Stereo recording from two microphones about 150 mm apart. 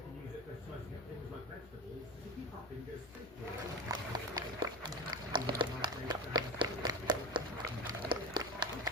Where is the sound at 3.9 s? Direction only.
30° right (ahead or behind).